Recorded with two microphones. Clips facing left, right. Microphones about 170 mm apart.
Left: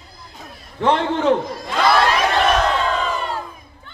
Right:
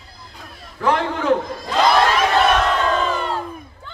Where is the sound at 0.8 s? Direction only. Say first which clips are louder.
Left 2 dB; 30° left (ahead or behind).